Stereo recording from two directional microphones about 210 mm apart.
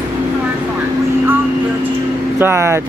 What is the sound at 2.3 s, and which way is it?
Speech, 10° right (ahead or behind).